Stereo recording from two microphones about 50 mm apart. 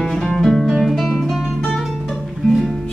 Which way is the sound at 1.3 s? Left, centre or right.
Centre.